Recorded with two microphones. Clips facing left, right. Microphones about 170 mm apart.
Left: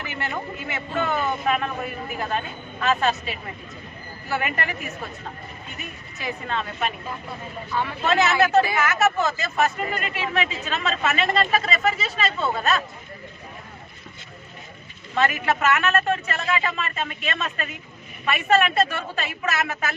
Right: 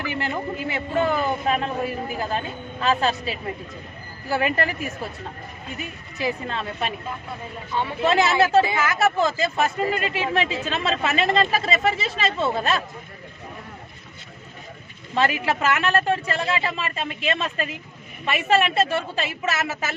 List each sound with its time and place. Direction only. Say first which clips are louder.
0.7 s speech: right 3 dB; 35° right (ahead or behind)
6.1 s speech: right 2 dB; 30° right (ahead or behind)
15.1 s a woman's voice: even; 30° right (ahead or behind)